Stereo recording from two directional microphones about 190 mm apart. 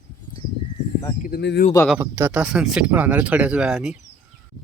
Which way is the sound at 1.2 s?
60° left (ahead or behind).